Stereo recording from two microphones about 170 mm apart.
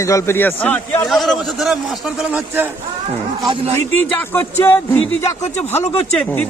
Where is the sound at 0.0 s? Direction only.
20° left (ahead or behind); by 2.6 s 5° right (ahead or behind).